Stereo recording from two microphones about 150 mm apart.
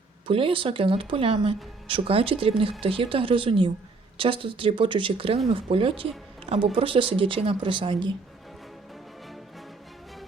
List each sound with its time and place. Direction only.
0.3 s speech: 35° right (ahead or behind)